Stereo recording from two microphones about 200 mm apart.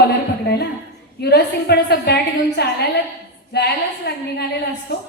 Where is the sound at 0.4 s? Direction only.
55° left (ahead or behind).